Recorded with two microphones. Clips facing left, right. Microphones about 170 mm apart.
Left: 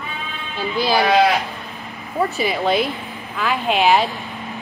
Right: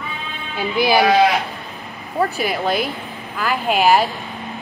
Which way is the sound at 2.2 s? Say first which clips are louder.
Even; centre (ahead or behind).